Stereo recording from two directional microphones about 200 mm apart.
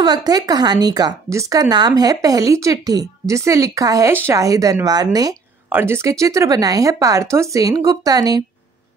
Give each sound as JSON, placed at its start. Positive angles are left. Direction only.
{"t": 0.0, "sound": "speech", "side_deg": -20}